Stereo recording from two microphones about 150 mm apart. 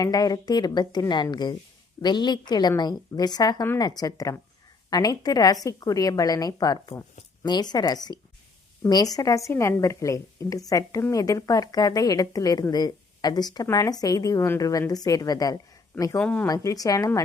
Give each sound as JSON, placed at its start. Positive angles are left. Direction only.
{"t": 0.0, "sound": "a woman's voice", "side_deg": 25}
{"t": 16.2, "sound": "speech", "side_deg": 10}
{"t": 16.5, "sound": "a woman's voice", "side_deg": 25}